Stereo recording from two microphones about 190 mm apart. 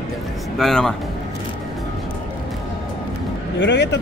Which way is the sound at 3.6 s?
70° left (ahead or behind).